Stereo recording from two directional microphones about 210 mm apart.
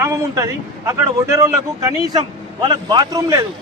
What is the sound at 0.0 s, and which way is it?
A man's voice, 15° right (ahead or behind).